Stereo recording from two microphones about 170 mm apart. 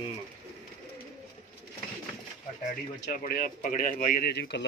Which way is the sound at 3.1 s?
60° left (ahead or behind).